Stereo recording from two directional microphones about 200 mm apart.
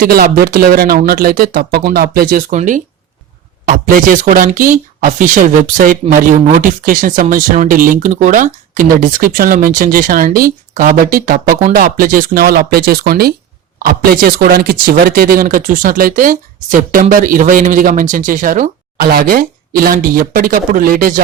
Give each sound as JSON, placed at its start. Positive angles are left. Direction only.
{"t": 0.0, "sound": "speech", "side_deg": -45}